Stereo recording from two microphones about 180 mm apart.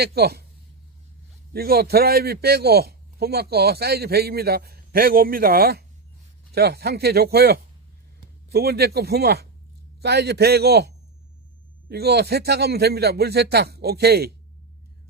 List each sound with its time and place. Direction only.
0.0 s a man's voice: 60° right (ahead or behind)
1.5 s a man's voice: 60° right (ahead or behind)